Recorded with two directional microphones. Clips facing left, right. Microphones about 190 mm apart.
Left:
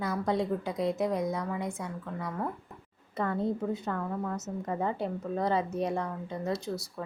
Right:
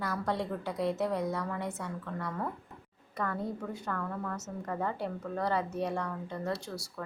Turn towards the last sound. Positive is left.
turn(degrees=20)  # may be behind; listen again after turning